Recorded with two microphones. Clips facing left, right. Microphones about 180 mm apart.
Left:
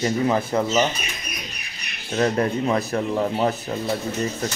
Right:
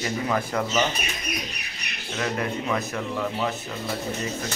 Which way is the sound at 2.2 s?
35° left (ahead or behind).